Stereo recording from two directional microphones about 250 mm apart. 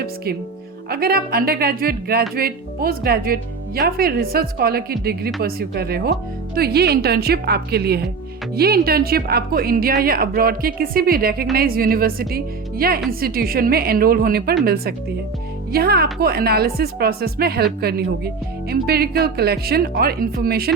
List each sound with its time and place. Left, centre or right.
0.9 s speech: right